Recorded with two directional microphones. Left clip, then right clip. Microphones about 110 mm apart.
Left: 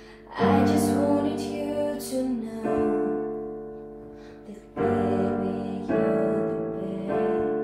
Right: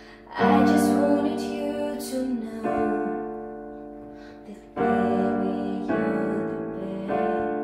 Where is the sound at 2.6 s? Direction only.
30° right (ahead or behind).